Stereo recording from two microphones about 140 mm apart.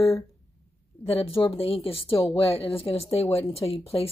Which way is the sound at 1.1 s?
40° left (ahead or behind).